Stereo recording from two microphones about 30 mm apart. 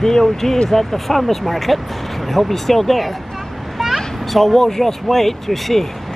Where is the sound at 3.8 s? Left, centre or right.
Centre.